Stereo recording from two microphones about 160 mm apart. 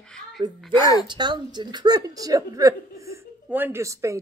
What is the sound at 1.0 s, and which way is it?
Speech, 30° right (ahead or behind).